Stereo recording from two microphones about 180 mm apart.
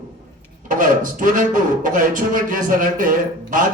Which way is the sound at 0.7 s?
50° right (ahead or behind).